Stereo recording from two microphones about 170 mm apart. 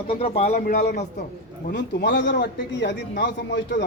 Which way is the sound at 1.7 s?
90° left.